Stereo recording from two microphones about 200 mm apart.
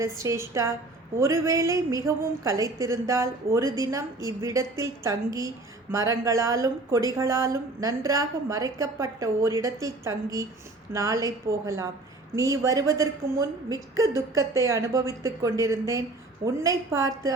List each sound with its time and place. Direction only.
0.0 s a woman's voice: 15° right (ahead or behind)